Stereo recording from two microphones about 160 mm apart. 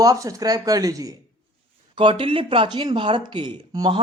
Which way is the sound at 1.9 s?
30° right (ahead or behind).